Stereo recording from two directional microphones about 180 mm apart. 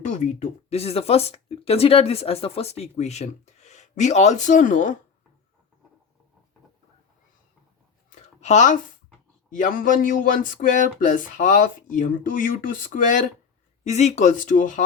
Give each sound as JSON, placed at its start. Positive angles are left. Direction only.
{"t": 0.0, "sound": "speech", "side_deg": 45}
{"t": 8.1, "sound": "a sound", "side_deg": 40}
{"t": 9.6, "sound": "speech", "side_deg": 50}